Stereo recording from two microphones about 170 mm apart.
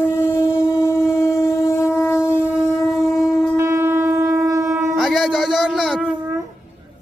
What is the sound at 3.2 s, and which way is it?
Shofar, centre (ahead or behind).